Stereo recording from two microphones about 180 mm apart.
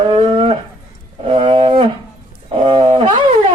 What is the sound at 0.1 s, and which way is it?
Speech, 35° right (ahead or behind).